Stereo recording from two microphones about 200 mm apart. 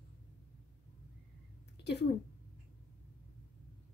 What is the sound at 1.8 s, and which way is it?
Speech, 55° left (ahead or behind).